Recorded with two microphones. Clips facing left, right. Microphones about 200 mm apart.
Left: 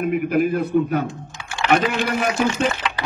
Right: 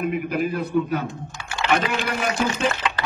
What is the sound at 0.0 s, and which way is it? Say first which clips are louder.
A man's voice: left 4 dB; 50° left (ahead or behind).